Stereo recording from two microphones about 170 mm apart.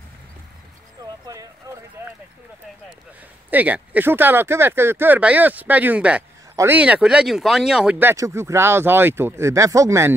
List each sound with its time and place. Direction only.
1.2 s speech: 20° right (ahead or behind)
3.4 s speech: 10° right (ahead or behind)